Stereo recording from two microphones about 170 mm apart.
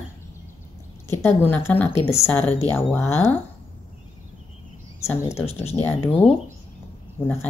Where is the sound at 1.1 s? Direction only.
15° left (ahead or behind).